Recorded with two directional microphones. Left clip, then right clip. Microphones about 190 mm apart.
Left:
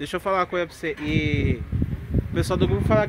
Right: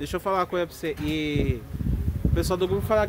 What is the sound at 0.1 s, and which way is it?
Speech, 15° left (ahead or behind).